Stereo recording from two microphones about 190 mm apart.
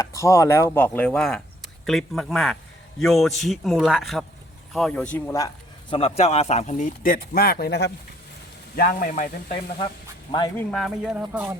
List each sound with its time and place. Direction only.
0.0 s speech: 15° left (ahead or behind)
5.9 s speech: 30° left (ahead or behind)
10.5 s speech: 5° left (ahead or behind)